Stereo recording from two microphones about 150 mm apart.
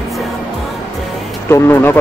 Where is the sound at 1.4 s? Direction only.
15° left (ahead or behind).